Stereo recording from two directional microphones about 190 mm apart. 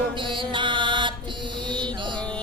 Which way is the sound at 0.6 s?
25° right (ahead or behind).